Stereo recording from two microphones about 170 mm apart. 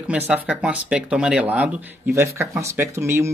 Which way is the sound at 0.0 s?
5° right (ahead or behind).